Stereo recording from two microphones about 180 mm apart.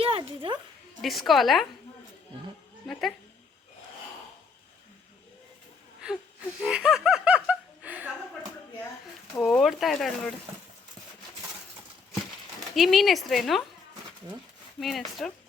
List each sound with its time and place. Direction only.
0.0 s a sound: 30° right (ahead or behind)
1.0 s speech: centre (ahead or behind)
2.8 s speech: centre (ahead or behind)
6.0 s speech: 5° right (ahead or behind)
6.6 s snicker: 5° right (ahead or behind)
9.3 s speech: 5° left (ahead or behind)
12.7 s speech: centre (ahead or behind)
14.8 s speech: centre (ahead or behind)